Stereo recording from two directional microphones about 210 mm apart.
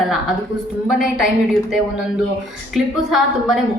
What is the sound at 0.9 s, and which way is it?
Speech, centre (ahead or behind).